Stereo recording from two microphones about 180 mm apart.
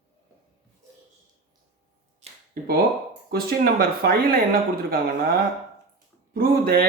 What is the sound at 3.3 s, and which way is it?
Speech, 60° right (ahead or behind).